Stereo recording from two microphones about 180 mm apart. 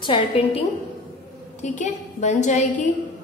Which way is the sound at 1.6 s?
45° left (ahead or behind).